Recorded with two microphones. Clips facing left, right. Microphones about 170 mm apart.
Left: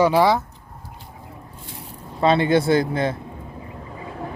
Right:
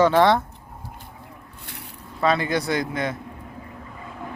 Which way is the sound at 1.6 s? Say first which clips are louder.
Left 1 dB; 70° right (ahead or behind).